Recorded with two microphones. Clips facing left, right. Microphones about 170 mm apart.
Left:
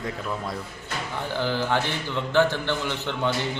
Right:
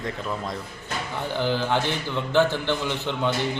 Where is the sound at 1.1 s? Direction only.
15° right (ahead or behind).